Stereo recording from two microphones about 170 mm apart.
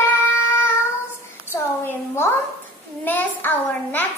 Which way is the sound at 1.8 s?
15° left (ahead or behind).